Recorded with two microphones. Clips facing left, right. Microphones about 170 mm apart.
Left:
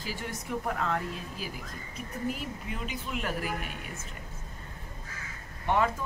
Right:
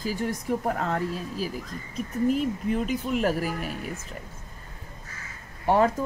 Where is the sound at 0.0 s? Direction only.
40° right (ahead or behind).